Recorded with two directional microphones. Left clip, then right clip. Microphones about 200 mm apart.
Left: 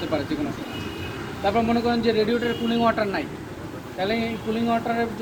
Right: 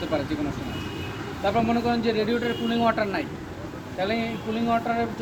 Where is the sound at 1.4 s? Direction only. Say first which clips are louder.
Left 2 dB; 10° right (ahead or behind).